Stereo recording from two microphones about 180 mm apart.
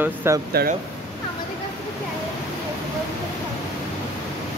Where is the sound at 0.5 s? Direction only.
60° right (ahead or behind).